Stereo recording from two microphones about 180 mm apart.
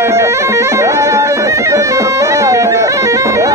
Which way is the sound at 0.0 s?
15° right (ahead or behind).